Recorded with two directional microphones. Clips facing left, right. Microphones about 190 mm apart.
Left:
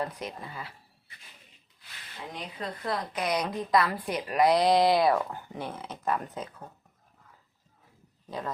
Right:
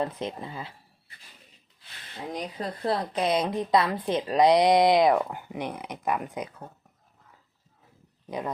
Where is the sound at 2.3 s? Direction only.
35° right (ahead or behind); by 6.7 s 15° right (ahead or behind).